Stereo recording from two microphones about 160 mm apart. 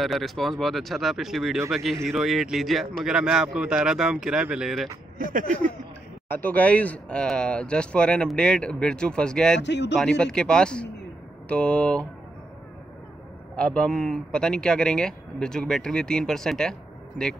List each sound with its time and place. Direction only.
0.0 s speech: centre (ahead or behind)
5.2 s speech: 55° right (ahead or behind)
6.4 s speech: 10° left (ahead or behind)
9.6 s a man's voice: 90° left
9.9 s speech: 5° left (ahead or behind)
13.6 s speech: 5° left (ahead or behind)